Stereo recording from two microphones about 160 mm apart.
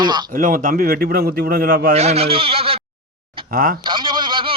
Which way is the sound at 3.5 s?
65° right (ahead or behind).